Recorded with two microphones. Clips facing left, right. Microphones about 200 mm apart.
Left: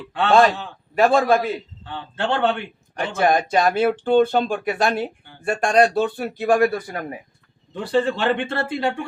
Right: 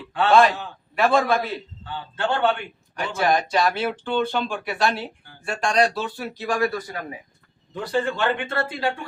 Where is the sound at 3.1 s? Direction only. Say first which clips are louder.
Left 3 dB; 50° left (ahead or behind).